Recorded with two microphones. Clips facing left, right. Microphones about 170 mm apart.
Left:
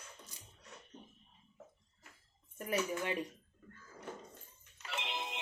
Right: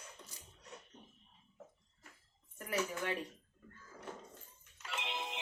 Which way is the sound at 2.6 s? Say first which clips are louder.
Left 2 dB; 20° left (ahead or behind).